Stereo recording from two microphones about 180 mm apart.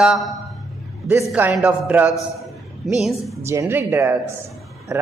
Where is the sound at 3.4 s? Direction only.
15° right (ahead or behind).